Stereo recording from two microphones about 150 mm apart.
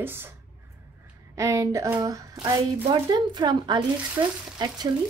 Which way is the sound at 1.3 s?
20° right (ahead or behind).